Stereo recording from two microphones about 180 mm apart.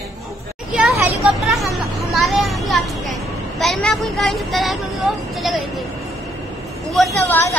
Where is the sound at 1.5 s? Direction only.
Centre (ahead or behind).